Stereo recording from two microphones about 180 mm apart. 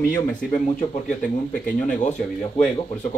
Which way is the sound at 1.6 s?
45° left (ahead or behind).